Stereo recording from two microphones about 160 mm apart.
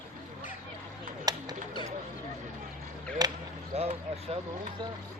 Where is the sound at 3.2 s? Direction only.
25° right (ahead or behind).